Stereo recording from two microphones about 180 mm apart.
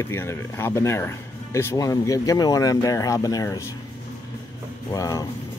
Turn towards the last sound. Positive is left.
turn(degrees=20)  # may be behind; listen again after turning